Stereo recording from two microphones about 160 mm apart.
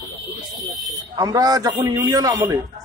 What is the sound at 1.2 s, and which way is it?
A man's voice, 25° right (ahead or behind).